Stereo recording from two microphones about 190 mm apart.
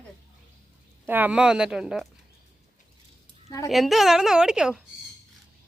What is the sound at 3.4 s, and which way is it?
Speech, 20° left (ahead or behind).